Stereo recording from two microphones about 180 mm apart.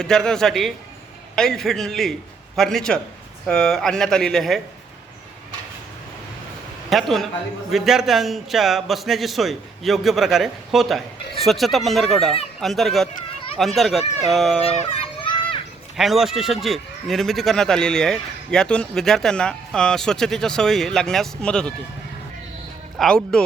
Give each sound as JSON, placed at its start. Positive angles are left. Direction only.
{"t": 0.0, "sound": "a man's voice", "side_deg": 5}
{"t": 6.9, "sound": "a man's voice", "side_deg": 0}
{"t": 15.0, "sound": "children playing", "side_deg": 30}
{"t": 16.0, "sound": "a man's voice", "side_deg": 0}
{"t": 23.0, "sound": "a man's voice", "side_deg": 5}